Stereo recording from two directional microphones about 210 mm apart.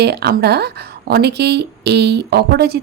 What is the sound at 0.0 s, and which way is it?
A woman's voice, 50° right (ahead or behind).